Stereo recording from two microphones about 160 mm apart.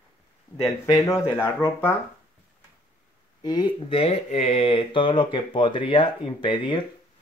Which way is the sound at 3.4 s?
25° left (ahead or behind).